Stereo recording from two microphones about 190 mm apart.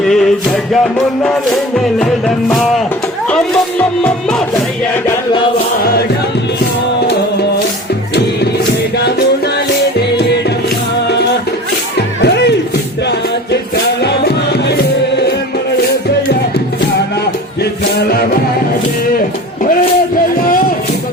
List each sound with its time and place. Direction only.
0.0 s music: centre (ahead or behind)
3.2 s speech: 5° left (ahead or behind)
11.9 s music: 65° left (ahead or behind)
14.0 s music: 60° left (ahead or behind)